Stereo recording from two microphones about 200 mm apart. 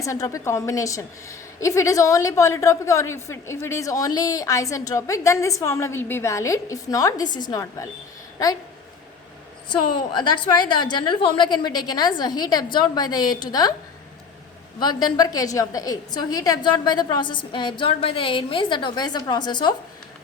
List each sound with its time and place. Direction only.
0.0 s a woman's voice: 15° left (ahead or behind)
9.6 s a woman's voice: 25° left (ahead or behind)
14.8 s a woman's voice: 20° left (ahead or behind)